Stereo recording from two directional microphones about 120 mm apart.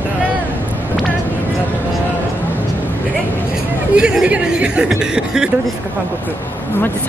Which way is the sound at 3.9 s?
10° right (ahead or behind).